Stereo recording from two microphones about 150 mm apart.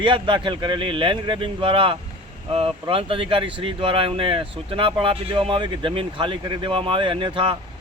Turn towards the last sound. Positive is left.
turn(degrees=-35)  # may be behind; listen again after turning